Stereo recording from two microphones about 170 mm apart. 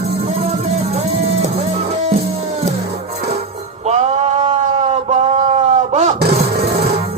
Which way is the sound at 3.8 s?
40° right (ahead or behind).